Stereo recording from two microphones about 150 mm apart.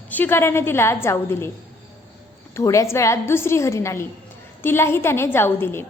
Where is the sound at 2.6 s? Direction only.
20° left (ahead or behind).